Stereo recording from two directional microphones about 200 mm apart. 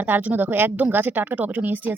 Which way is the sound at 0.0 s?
10° right (ahead or behind).